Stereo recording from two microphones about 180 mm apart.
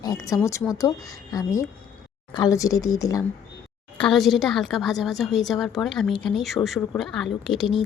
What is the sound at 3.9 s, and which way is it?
A woman's voice, 5° left (ahead or behind).